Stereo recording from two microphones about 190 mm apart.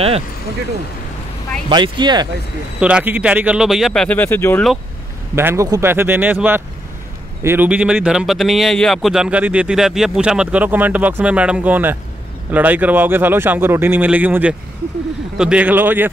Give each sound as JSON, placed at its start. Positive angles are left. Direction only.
{"t": 1.7, "sound": "speech", "side_deg": -25}
{"t": 2.8, "sound": "a man's voice", "side_deg": -5}
{"t": 5.3, "sound": "a man's voice", "side_deg": -15}